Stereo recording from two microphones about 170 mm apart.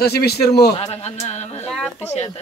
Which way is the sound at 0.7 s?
35° left (ahead or behind).